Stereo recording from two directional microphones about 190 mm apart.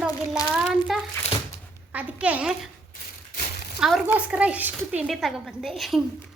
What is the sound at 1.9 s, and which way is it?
Speech, 5° right (ahead or behind).